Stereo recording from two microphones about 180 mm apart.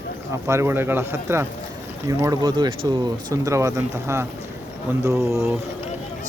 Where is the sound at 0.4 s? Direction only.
15° right (ahead or behind).